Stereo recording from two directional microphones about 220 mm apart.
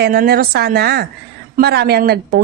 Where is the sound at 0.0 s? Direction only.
45° right (ahead or behind).